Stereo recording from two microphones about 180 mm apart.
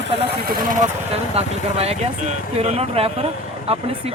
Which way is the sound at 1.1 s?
35° right (ahead or behind).